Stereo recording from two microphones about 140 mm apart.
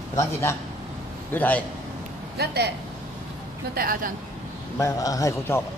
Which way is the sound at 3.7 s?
90° right.